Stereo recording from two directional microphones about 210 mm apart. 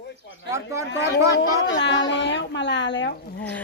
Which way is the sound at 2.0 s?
60° left (ahead or behind).